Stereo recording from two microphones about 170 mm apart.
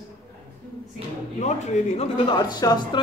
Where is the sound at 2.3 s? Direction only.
25° left (ahead or behind).